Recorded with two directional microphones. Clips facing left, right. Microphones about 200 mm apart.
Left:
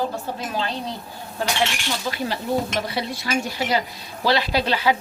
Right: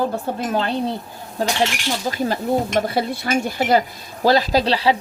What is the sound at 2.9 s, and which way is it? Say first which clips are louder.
Speech: right 5 dB; 50° right (ahead or behind).